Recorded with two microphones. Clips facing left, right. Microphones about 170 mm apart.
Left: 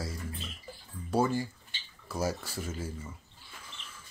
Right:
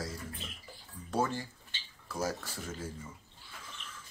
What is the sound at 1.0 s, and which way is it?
Speech, 10° left (ahead or behind).